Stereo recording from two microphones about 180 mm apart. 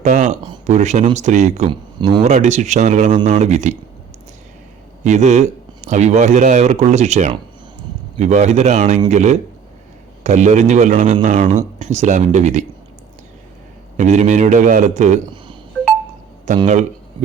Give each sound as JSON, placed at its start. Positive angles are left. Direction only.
{"t": 0.0, "sound": "speech", "side_deg": -40}
{"t": 5.0, "sound": "speech", "side_deg": -40}
{"t": 13.9, "sound": "a man's voice", "side_deg": -40}
{"t": 16.6, "sound": "speech", "side_deg": -40}